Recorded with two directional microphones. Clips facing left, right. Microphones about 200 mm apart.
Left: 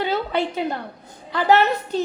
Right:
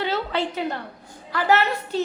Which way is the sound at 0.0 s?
15° left (ahead or behind).